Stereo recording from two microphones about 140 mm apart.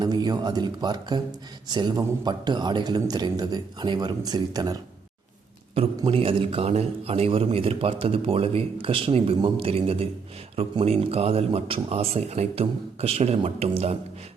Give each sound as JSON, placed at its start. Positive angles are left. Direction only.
{"t": 0.0, "sound": "a man's voice", "side_deg": -30}
{"t": 6.1, "sound": "a man's voice", "side_deg": -40}